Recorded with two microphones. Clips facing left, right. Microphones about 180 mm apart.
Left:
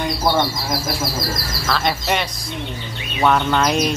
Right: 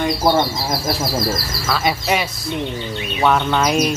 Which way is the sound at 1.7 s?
5° right (ahead or behind).